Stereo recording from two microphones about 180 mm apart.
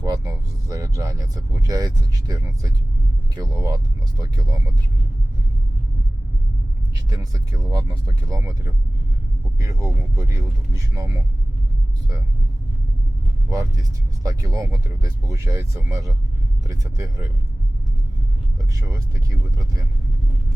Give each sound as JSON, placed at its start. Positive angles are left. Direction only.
{"t": 0.7, "sound": "speech", "side_deg": -15}
{"t": 7.1, "sound": "speech", "side_deg": -20}
{"t": 13.5, "sound": "speech", "side_deg": -20}
{"t": 18.7, "sound": "speech", "side_deg": -20}